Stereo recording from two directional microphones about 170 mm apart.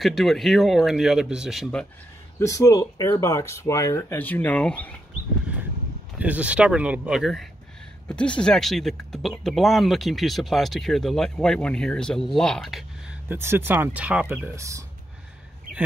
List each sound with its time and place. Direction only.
0.0 s speech: centre (ahead or behind)
2.3 s speech: 20° left (ahead or behind)
6.1 s speech: 10° right (ahead or behind)
13.3 s speech: 15° right (ahead or behind)